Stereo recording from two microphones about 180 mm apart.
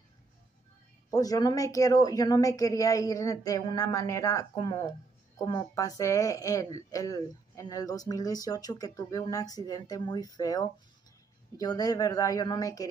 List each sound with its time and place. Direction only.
1.1 s speech: 20° left (ahead or behind)